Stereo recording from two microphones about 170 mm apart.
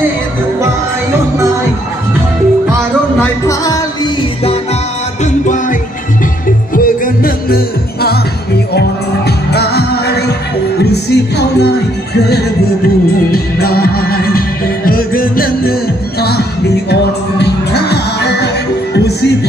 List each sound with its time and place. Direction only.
5.2 s music: 45° left (ahead or behind); by 8.2 s 65° left (ahead or behind)
9.5 s music: 70° left (ahead or behind)
13.3 s music: 65° left (ahead or behind)
16.2 s music: 70° left (ahead or behind)